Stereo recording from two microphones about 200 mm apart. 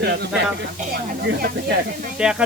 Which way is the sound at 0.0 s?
55° right (ahead or behind).